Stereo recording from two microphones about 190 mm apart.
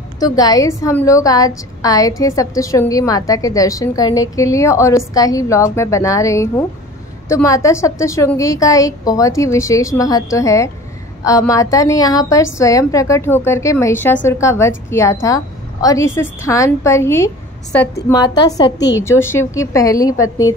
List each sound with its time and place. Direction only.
0.2 s a woman's voice: 20° left (ahead or behind)
18.8 s a woman's voice: 65° left (ahead or behind)
19.0 s a woman's voice: 15° left (ahead or behind)
20.2 s a woman's voice: 90° left